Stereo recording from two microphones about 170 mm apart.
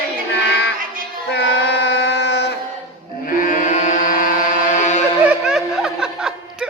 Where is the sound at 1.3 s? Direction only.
80° left.